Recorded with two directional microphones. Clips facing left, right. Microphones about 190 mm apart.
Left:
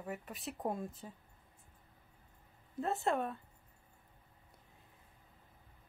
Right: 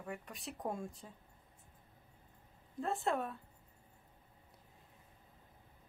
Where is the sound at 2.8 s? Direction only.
Centre (ahead or behind).